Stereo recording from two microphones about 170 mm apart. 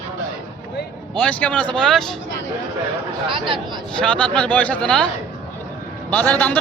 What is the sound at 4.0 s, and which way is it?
A man's voice, 5° left (ahead or behind).